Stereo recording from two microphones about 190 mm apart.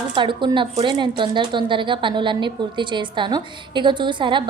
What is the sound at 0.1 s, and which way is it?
A woman's voice, 25° right (ahead or behind).